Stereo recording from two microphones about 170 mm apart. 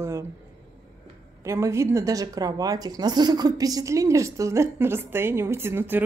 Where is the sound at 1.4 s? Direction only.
15° right (ahead or behind).